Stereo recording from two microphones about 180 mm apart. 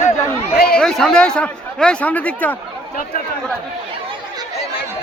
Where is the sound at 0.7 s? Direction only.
5° left (ahead or behind).